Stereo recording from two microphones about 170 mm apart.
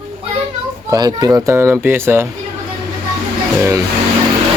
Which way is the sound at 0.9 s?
25° right (ahead or behind).